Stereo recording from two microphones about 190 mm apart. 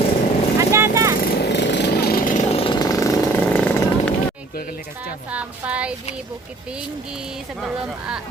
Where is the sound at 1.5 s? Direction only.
65° left (ahead or behind); by 3.1 s 20° left (ahead or behind).